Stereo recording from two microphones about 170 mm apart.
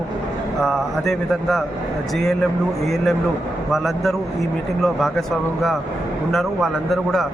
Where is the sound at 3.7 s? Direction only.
Centre (ahead or behind).